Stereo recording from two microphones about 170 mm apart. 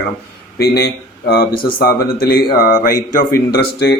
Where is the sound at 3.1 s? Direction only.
60° left (ahead or behind).